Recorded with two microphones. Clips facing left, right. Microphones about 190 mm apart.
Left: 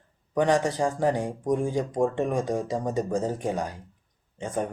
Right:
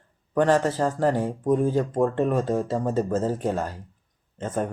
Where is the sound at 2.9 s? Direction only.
5° right (ahead or behind).